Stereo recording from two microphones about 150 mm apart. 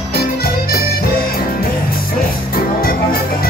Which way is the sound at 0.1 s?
90° left.